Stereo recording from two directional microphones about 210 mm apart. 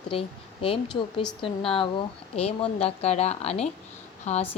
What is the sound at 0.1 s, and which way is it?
A woman's voice, 25° left (ahead or behind).